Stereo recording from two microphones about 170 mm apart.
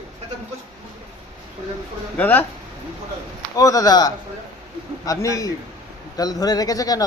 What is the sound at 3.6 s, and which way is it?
Speech, 20° left (ahead or behind).